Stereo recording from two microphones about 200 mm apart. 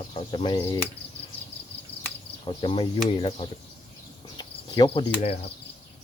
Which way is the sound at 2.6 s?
25° left (ahead or behind).